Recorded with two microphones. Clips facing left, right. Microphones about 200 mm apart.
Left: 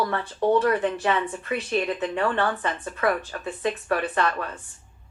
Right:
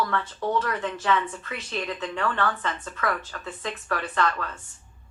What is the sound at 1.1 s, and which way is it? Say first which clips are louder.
Speech: left 2 dB; 30° left (ahead or behind).